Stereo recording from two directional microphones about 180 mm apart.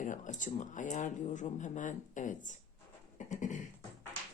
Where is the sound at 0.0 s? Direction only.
45° left (ahead or behind).